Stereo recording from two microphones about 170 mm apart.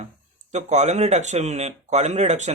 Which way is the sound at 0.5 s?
45° right (ahead or behind).